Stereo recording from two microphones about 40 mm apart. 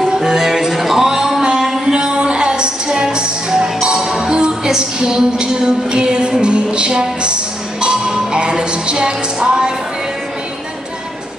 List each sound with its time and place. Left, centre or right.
0.1 s music: centre
1.9 s a sound: centre
2.2 s music: right